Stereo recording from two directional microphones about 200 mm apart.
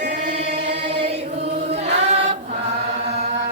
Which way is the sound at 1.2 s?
30° right (ahead or behind).